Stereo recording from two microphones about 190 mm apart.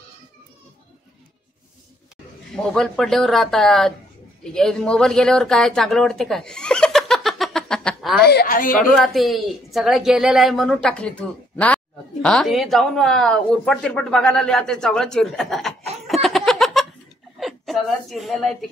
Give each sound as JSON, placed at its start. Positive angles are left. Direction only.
{"t": 2.5, "sound": "speech", "side_deg": 5}
{"t": 8.2, "sound": "a woman's voice", "side_deg": 60}
{"t": 8.7, "sound": "a woman's voice", "side_deg": 0}